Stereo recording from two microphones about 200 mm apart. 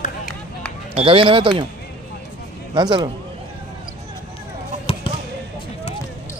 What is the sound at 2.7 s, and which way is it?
Speech, 20° right (ahead or behind).